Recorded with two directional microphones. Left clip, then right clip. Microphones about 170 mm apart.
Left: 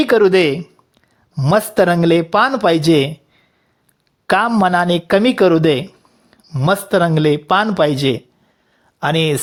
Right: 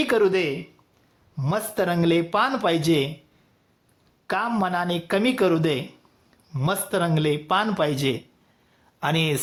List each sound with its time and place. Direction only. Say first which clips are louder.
0.0 s speech: left 9 dB; 35° left (ahead or behind)
4.3 s speech: left 11 dB; 45° left (ahead or behind); by 9.4 s 30° left (ahead or behind)